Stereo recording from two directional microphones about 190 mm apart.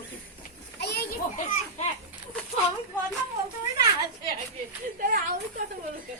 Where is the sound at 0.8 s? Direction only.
60° left (ahead or behind).